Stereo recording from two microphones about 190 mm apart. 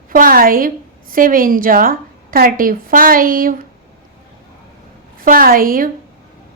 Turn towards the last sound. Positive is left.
turn(degrees=-50)  # may be behind; listen again after turning